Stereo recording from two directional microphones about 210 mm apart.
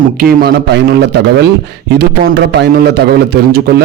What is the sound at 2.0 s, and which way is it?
Speech, 50° right (ahead or behind).